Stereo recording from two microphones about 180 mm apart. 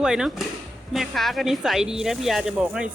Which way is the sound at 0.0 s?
5° right (ahead or behind).